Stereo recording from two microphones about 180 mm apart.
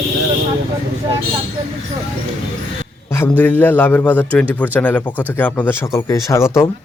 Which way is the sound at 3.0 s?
10° left (ahead or behind).